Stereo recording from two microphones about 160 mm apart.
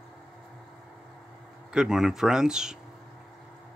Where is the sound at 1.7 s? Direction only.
5° right (ahead or behind).